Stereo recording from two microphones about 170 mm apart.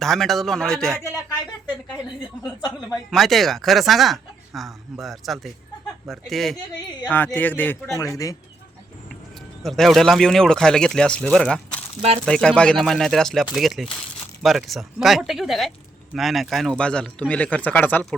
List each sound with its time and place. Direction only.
0.0 s speech: centre (ahead or behind)
2.6 s a woman's voice: 25° left (ahead or behind)
3.1 s speech: centre (ahead or behind); by 8.4 s 20° left (ahead or behind)
9.6 s speech: centre (ahead or behind)